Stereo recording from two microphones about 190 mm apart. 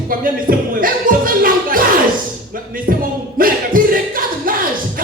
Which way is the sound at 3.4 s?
45° right (ahead or behind).